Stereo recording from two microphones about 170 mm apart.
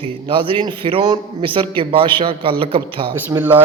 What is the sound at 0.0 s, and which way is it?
A man's voice, 30° right (ahead or behind).